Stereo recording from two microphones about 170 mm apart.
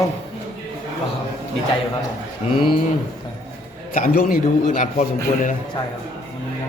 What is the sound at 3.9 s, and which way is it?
A man's voice, 55° left (ahead or behind).